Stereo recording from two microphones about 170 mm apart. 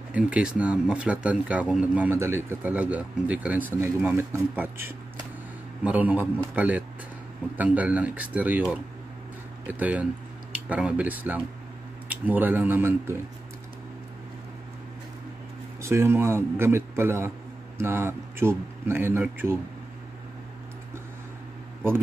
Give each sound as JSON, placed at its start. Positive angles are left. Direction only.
{"t": 0.1, "sound": "speech", "side_deg": -5}
{"t": 9.7, "sound": "speech", "side_deg": -10}
{"t": 15.8, "sound": "speech", "side_deg": -15}